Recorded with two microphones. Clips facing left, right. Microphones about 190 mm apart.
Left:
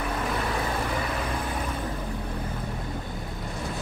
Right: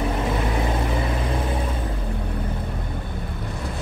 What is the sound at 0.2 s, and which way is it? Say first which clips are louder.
Vehicle: right 4 dB; 20° right (ahead or behind).